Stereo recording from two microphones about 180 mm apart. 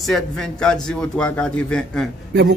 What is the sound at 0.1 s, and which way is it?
A man's voice, 5° left (ahead or behind).